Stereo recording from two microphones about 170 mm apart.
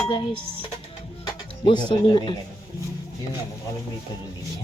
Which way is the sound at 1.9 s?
25° left (ahead or behind).